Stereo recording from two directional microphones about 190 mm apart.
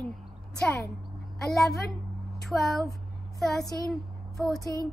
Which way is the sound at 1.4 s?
Centre (ahead or behind).